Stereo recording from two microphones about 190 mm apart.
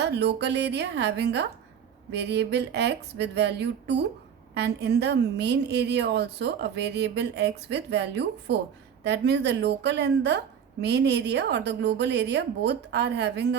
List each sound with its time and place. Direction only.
0.0 s a woman's voice: 60° right (ahead or behind)